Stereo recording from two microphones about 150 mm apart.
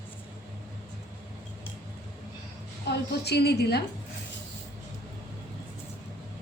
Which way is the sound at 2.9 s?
90° left.